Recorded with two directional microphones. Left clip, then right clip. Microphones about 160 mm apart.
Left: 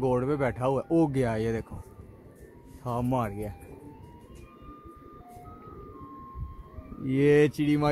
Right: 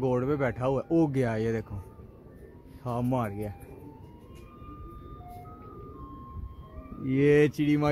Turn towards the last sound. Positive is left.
turn(degrees=5)  # may be behind; listen again after turning